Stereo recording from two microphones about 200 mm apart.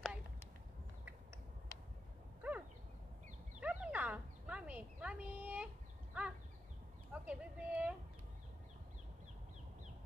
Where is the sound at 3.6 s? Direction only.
5° right (ahead or behind).